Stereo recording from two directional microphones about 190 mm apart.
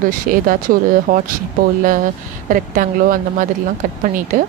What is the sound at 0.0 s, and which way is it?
Speech, 45° right (ahead or behind).